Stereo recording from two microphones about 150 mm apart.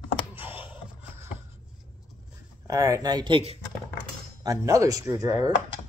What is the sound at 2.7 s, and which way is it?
Speech, 25° right (ahead or behind).